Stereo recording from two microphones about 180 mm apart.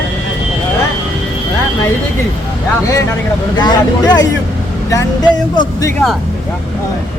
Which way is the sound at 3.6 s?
25° left (ahead or behind).